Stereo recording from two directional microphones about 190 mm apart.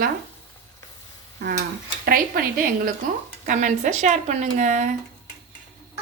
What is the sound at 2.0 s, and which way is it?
Speech, 50° right (ahead or behind).